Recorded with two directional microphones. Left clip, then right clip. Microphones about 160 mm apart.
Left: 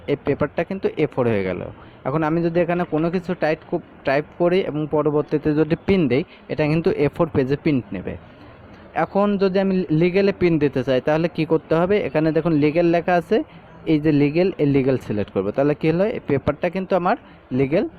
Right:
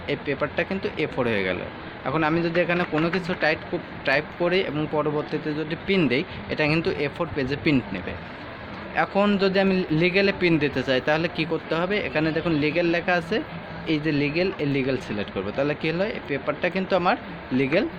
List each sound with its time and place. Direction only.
0.1 s speech: 60° left (ahead or behind)
4.9 s speech: 35° left (ahead or behind)
5.3 s speech: 65° left (ahead or behind)